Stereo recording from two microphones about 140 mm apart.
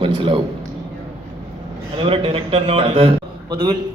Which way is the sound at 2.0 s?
40° right (ahead or behind).